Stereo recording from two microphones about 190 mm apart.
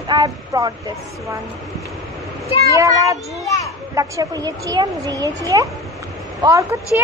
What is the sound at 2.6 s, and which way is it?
Speech, 15° right (ahead or behind).